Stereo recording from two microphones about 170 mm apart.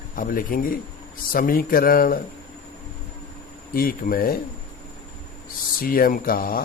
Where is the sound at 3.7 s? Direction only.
60° left (ahead or behind).